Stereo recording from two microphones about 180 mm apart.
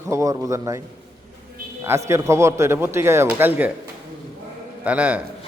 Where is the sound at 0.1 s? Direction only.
15° right (ahead or behind).